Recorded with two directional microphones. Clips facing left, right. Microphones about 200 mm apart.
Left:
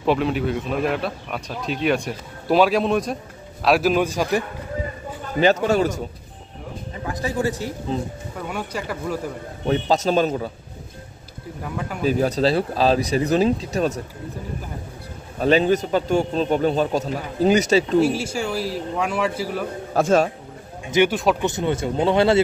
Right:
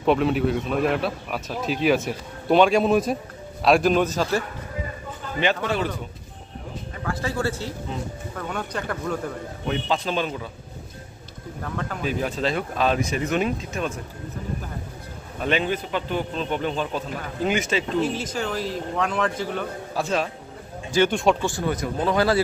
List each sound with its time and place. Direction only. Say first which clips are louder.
0.0 s a man's voice: even; centre (ahead or behind)
5.4 s a man's voice: left 6 dB; 40° left (ahead or behind)
7.0 s speech: left 2 dB; 15° left (ahead or behind)
9.7 s a man's voice: left 6 dB; 40° left (ahead or behind)
11.6 s speech: left 1 dB; 10° left (ahead or behind)
12.0 s a man's voice: left 7 dB; 40° left (ahead or behind)
15.3 s a man's voice: left 7 dB; 35° left (ahead or behind)
18.0 s speech: left 4 dB; 10° left (ahead or behind)
19.9 s a man's voice: left 8 dB; 50° left (ahead or behind)
21.1 s a man's voice: even; centre (ahead or behind)
21.4 s speech: left 3 dB; 20° left (ahead or behind)